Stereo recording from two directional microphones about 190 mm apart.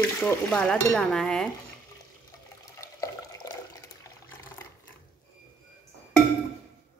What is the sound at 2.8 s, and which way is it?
Water, 15° left (ahead or behind).